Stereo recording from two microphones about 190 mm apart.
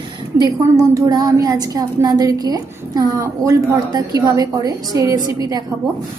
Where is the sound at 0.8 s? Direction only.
20° right (ahead or behind).